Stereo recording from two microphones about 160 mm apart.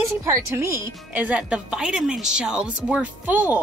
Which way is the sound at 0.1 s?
15° right (ahead or behind).